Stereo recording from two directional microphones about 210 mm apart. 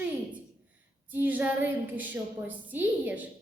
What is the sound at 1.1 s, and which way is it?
A woman's voice, 10° right (ahead or behind).